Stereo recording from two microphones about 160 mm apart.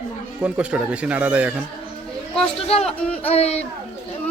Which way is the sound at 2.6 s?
40° left (ahead or behind).